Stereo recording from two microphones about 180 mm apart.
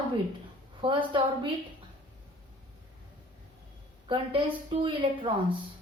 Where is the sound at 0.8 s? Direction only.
30° right (ahead or behind).